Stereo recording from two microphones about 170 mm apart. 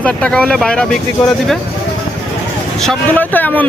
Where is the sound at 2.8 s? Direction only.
5° left (ahead or behind).